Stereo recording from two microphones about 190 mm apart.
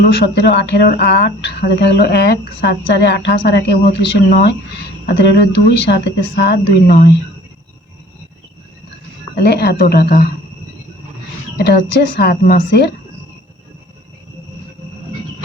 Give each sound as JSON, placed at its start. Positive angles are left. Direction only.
{"t": 0.1, "sound": "speech", "side_deg": 65}
{"t": 9.3, "sound": "speech", "side_deg": 60}
{"t": 11.5, "sound": "speech", "side_deg": 60}